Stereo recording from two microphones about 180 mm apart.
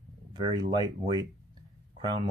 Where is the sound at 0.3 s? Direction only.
25° right (ahead or behind).